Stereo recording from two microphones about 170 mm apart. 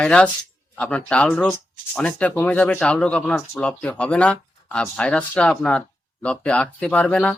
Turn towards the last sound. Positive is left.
turn(degrees=5)  # may be behind; listen again after turning